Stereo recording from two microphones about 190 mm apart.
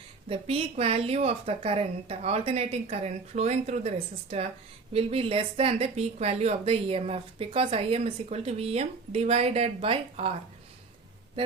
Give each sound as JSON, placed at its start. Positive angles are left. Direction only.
{"t": 0.3, "sound": "a woman's voice", "side_deg": -30}